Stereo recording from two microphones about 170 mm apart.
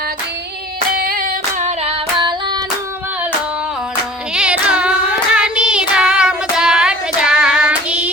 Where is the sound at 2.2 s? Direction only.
25° right (ahead or behind).